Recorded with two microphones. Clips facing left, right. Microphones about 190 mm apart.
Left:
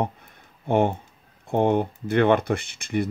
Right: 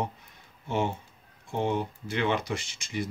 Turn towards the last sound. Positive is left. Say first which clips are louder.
# left 7 dB
turn(degrees=60)  # may be behind; listen again after turning